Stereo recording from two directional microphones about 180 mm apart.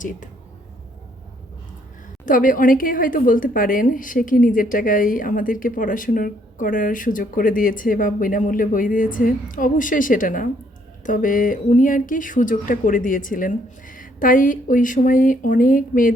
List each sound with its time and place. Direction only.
2.2 s a woman's voice: 50° left (ahead or behind)